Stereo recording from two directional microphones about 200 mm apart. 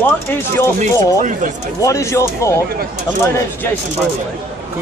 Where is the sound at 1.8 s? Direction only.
15° left (ahead or behind).